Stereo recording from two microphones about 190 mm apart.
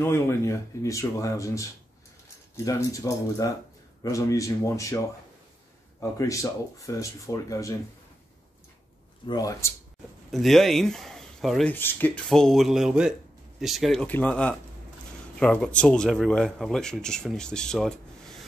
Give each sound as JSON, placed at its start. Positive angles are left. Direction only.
{"t": 0.0, "sound": "speech", "side_deg": 15}
{"t": 9.2, "sound": "speech", "side_deg": 20}
{"t": 10.3, "sound": "speech", "side_deg": 0}